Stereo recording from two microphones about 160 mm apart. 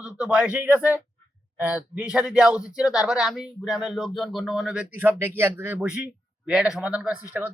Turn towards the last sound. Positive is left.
turn(degrees=-10)  # may be behind; listen again after turning